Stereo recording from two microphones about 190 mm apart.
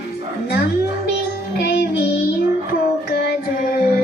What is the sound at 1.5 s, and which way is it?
Music, 55° left (ahead or behind).